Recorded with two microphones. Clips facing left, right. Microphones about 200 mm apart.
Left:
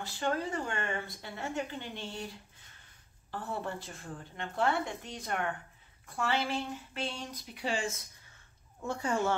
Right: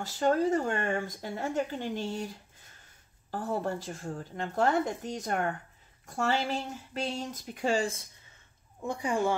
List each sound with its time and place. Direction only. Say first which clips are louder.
0.0 s speech: right 7 dB; 40° right (ahead or behind)
3.3 s a woman's voice: right 6 dB; 40° right (ahead or behind)
8.8 s a woman's voice: right 2 dB; 15° right (ahead or behind)